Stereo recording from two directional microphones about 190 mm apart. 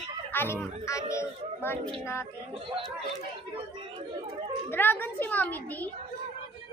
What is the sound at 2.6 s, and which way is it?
Speech, 30° right (ahead or behind).